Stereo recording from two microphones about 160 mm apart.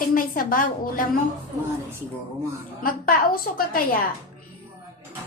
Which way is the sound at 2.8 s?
60° left (ahead or behind).